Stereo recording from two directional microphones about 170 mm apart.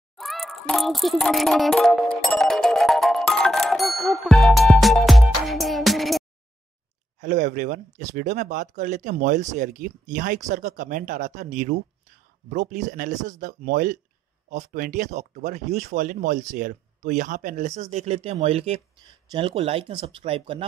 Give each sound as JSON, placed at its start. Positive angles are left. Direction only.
{"t": 0.2, "sound": "music", "side_deg": 0}
{"t": 7.2, "sound": "speech", "side_deg": -45}